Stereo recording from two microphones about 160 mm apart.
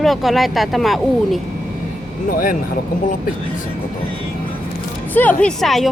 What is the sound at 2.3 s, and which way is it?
Speech, 65° left (ahead or behind).